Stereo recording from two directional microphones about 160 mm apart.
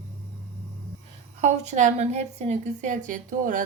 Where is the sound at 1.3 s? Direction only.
45° right (ahead or behind).